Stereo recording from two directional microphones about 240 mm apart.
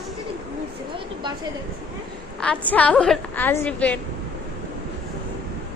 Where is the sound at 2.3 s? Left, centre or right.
Centre.